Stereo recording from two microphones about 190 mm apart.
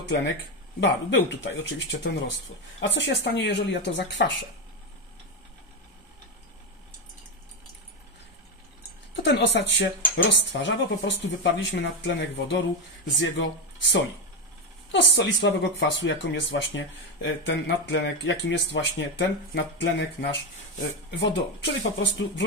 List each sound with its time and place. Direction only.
0.7 s speech: 65° left (ahead or behind)
9.1 s speech: 70° left (ahead or behind)